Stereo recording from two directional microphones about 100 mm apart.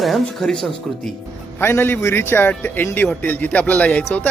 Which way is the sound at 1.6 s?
20° left (ahead or behind).